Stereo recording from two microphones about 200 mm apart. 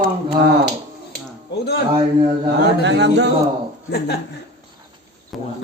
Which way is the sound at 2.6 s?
60° right (ahead or behind).